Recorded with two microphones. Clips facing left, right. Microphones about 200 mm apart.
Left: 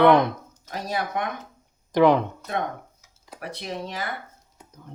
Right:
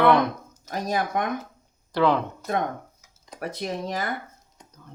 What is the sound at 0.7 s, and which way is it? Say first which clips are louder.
Speech: right 2 dB; 45° right (ahead or behind).